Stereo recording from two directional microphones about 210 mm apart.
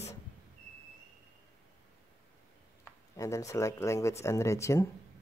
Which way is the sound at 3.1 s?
15° left (ahead or behind).